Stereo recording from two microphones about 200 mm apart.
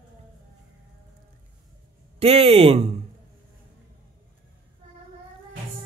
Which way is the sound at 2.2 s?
30° right (ahead or behind).